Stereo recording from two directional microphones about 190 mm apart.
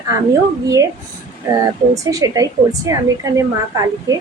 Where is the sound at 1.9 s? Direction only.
20° right (ahead or behind).